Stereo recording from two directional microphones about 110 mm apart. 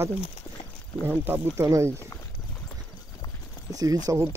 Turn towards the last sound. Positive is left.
turn(degrees=-25)  # may be behind; listen again after turning